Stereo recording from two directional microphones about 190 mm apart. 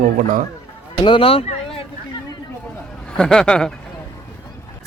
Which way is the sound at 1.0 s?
25° left (ahead or behind).